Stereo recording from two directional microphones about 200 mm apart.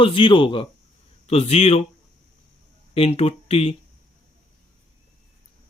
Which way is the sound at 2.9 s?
30° left (ahead or behind).